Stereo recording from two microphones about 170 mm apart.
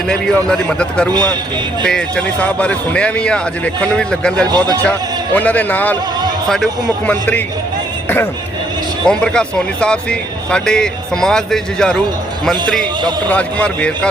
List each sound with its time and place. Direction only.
0.1 s speech: 5° left (ahead or behind)
1.1 s a man's voice: 25° right (ahead or behind)
1.8 s speech: 5° left (ahead or behind)
4.4 s a man's voice: 25° right (ahead or behind)
4.8 s a man's voice: 10° left (ahead or behind)
7.1 s a man's voice: 10° left (ahead or behind)
9.0 s speech: 5° left (ahead or behind)
13.2 s a man's voice: 10° left (ahead or behind)